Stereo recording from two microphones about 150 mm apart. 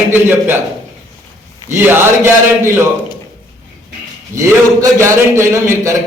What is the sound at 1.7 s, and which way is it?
A man's voice, 15° right (ahead or behind).